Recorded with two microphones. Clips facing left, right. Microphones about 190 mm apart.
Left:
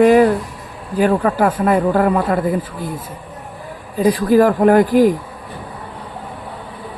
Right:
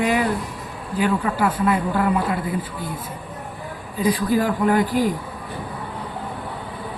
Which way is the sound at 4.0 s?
50° left (ahead or behind).